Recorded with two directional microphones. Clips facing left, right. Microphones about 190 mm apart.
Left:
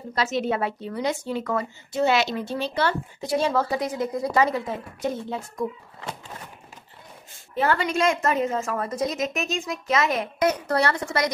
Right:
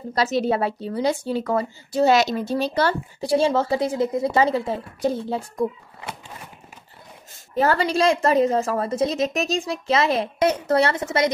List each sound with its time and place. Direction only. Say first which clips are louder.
0.1 s speech: right 4 dB; 35° right (ahead or behind)
7.5 s speech: right 3 dB; 40° right (ahead or behind)